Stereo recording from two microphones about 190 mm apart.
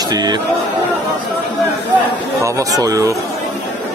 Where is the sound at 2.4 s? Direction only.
15° right (ahead or behind).